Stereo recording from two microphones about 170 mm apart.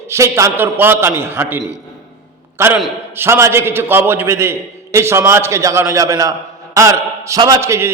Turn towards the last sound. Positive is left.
turn(degrees=-15)  # may be behind; listen again after turning